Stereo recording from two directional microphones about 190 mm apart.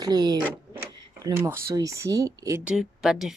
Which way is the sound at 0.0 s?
20° right (ahead or behind).